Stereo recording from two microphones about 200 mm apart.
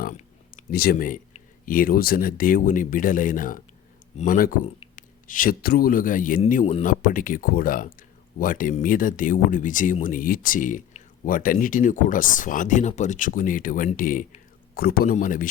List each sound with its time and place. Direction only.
0.7 s a man's voice: 50° left (ahead or behind)